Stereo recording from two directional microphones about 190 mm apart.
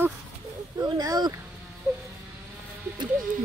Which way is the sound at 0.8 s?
20° right (ahead or behind).